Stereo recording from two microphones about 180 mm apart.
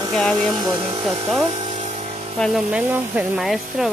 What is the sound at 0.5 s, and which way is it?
Speech, 25° right (ahead or behind).